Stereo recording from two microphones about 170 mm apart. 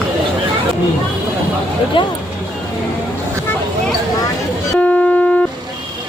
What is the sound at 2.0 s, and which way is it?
Speech, 30° left (ahead or behind).